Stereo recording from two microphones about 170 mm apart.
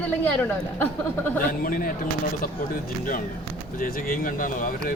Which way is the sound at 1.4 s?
55° left (ahead or behind).